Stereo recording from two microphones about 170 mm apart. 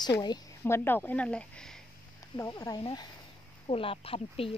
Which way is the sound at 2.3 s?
20° left (ahead or behind).